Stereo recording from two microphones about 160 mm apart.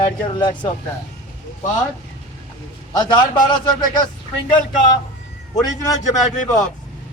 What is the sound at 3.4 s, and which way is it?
Speech, 30° left (ahead or behind).